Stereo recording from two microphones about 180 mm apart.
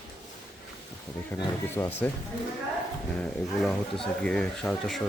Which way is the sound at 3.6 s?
Centre (ahead or behind).